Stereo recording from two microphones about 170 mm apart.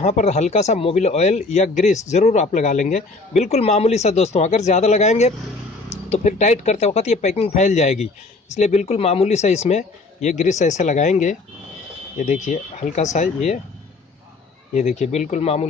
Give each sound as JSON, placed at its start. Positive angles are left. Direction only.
{"t": 0.0, "sound": "a man's voice", "side_deg": 40}
{"t": 14.7, "sound": "speech", "side_deg": 40}